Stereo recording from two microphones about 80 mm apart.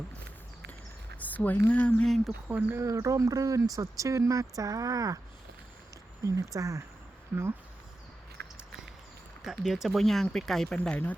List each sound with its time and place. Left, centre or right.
1.2 s speech: left
2.0 s speech: centre
2.7 s speech: right
6.2 s speech: right
7.3 s speech: right
9.4 s speech: centre
10.8 s speech: centre